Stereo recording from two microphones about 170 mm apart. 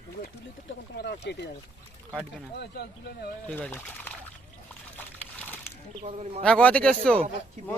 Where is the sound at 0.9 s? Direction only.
80° left.